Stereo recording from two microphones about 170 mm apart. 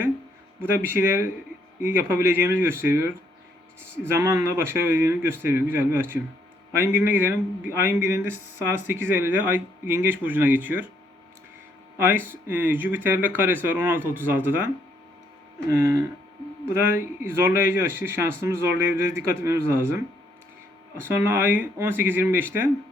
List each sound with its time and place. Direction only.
0.6 s speech: 10° right (ahead or behind)
11.9 s speech: 10° right (ahead or behind)
15.7 s speech: 15° right (ahead or behind)
21.0 s speech: 15° right (ahead or behind)